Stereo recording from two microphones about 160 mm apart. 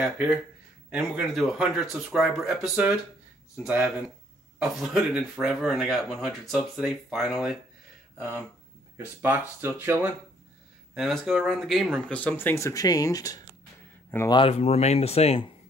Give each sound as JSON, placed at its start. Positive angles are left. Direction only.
{"t": 0.0, "sound": "speech", "side_deg": -5}
{"t": 8.9, "sound": "speech", "side_deg": -15}
{"t": 11.0, "sound": "speech", "side_deg": 0}
{"t": 14.3, "sound": "speech", "side_deg": 35}